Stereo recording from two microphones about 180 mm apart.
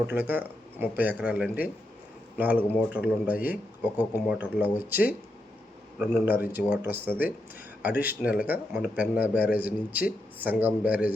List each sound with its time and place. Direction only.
0.1 s speech: 10° right (ahead or behind)
2.9 s speech: 5° right (ahead or behind)
6.0 s a man's voice: centre (ahead or behind)
6.2 s speech: 10° right (ahead or behind)